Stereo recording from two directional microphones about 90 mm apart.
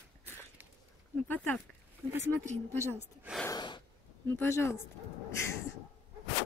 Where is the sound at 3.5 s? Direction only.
55° left (ahead or behind).